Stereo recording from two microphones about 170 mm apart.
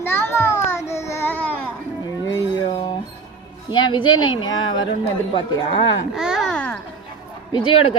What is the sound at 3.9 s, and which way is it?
Speech, 30° left (ahead or behind).